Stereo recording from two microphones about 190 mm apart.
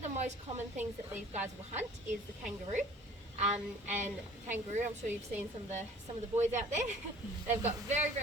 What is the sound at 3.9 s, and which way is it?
Speech, 40° right (ahead or behind).